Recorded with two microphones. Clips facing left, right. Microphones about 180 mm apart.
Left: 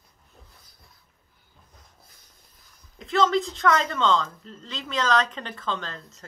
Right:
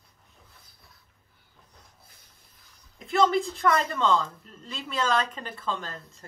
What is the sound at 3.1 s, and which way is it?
Speech, 10° right (ahead or behind).